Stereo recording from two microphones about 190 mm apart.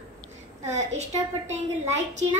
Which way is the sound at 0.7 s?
35° right (ahead or behind).